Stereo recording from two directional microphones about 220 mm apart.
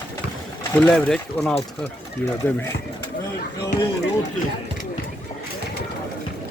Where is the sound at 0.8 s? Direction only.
5° left (ahead or behind).